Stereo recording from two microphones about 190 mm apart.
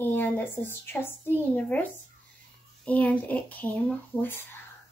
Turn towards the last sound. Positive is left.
turn(degrees=10)  # may be behind; listen again after turning